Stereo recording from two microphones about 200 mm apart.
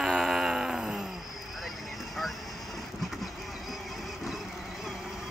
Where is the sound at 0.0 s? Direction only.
Centre (ahead or behind).